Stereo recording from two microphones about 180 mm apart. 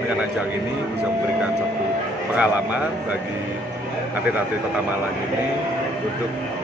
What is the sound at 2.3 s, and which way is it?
Speech, 10° right (ahead or behind).